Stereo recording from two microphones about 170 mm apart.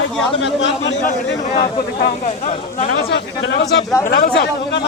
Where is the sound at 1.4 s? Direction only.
45° left (ahead or behind).